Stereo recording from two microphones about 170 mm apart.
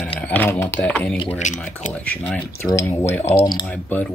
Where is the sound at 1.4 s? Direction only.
45° left (ahead or behind).